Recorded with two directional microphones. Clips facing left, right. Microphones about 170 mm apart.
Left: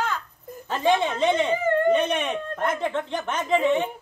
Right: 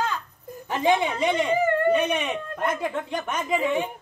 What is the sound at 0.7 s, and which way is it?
Speech, 15° right (ahead or behind).